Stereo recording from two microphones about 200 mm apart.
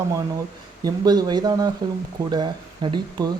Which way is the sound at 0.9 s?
20° right (ahead or behind).